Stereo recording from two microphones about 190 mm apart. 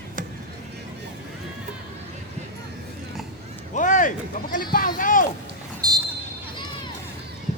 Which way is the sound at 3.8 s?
40° left (ahead or behind).